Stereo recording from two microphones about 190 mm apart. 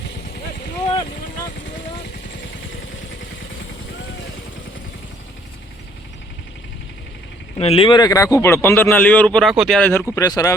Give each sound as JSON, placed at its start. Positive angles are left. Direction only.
{"t": 7.6, "sound": "speech", "side_deg": 30}
{"t": 10.2, "sound": "speech", "side_deg": 20}